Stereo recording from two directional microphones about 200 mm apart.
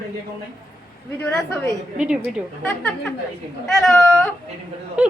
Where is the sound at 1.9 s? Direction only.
5° right (ahead or behind).